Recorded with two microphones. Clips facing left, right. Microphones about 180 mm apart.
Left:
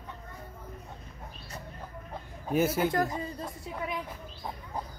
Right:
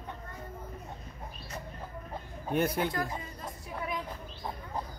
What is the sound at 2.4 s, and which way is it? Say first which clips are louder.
Chicken: left 3 dB; 5° left (ahead or behind).